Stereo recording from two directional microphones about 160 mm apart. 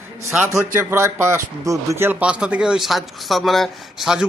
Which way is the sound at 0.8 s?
15° right (ahead or behind).